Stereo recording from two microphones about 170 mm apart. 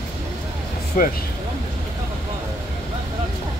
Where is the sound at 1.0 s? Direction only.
50° left (ahead or behind).